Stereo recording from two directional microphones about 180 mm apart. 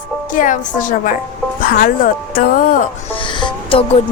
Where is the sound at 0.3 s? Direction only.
45° left (ahead or behind).